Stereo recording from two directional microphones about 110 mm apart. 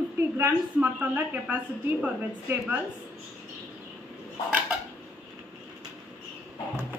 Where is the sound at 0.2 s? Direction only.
20° right (ahead or behind).